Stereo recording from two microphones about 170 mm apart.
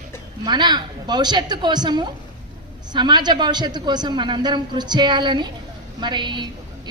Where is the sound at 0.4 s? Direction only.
25° right (ahead or behind).